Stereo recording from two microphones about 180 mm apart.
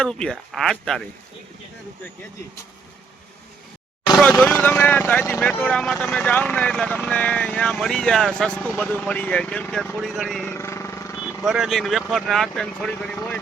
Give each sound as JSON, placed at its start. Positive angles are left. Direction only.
{"t": 0.0, "sound": "speech", "side_deg": 5}
{"t": 4.4, "sound": "speech", "side_deg": 10}
{"t": 10.5, "sound": "vehicle", "side_deg": 15}
{"t": 11.2, "sound": "speech", "side_deg": -5}